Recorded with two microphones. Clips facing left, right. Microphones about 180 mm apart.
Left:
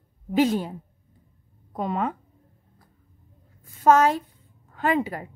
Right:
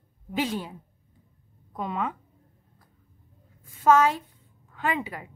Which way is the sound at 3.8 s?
45° left (ahead or behind).